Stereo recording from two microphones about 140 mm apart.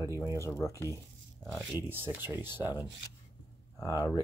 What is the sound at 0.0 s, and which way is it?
Speech, 20° right (ahead or behind).